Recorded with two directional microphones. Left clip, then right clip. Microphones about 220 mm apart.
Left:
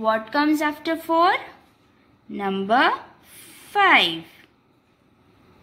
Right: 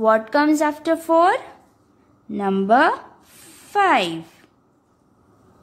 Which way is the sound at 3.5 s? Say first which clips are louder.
Even; 25° right (ahead or behind).